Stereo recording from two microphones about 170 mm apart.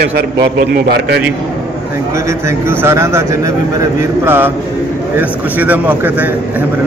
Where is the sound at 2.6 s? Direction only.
15° right (ahead or behind).